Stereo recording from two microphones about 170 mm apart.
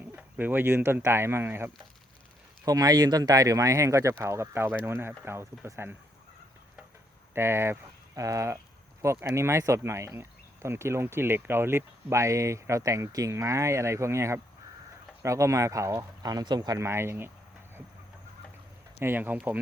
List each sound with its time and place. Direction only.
0.0 s speech: 10° right (ahead or behind)
7.3 s speech: 15° right (ahead or behind)
18.9 s speech: 10° right (ahead or behind)